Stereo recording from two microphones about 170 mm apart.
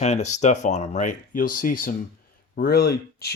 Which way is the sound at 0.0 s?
40° left (ahead or behind).